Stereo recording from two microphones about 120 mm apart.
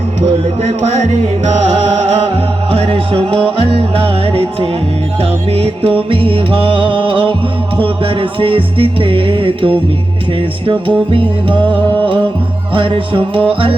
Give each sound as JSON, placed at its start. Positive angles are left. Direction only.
{"t": 2.7, "sound": "music", "side_deg": -50}
{"t": 11.1, "sound": "music", "side_deg": -45}
{"t": 12.7, "sound": "music", "side_deg": -45}